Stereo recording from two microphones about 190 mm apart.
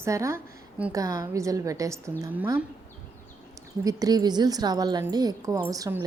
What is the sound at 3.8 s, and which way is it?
A woman's voice, 20° right (ahead or behind).